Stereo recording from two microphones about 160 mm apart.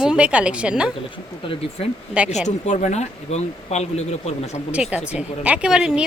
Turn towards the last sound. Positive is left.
turn(degrees=-5)  # may be behind; listen again after turning